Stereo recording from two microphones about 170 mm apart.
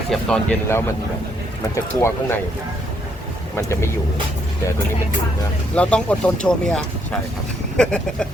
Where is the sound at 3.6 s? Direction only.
15° left (ahead or behind).